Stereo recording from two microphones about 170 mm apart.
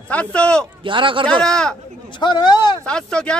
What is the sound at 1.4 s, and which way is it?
Speech, 5° left (ahead or behind).